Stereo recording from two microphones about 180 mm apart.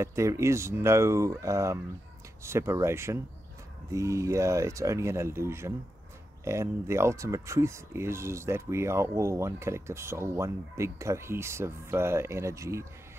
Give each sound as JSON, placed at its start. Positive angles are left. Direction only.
{"t": 0.0, "sound": "speech", "side_deg": -15}